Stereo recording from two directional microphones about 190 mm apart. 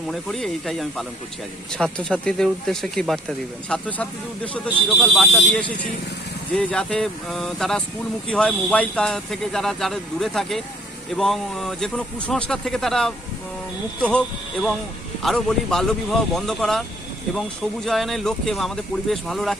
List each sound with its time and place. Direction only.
0.1 s speech: centre (ahead or behind)
17.8 s speech: centre (ahead or behind)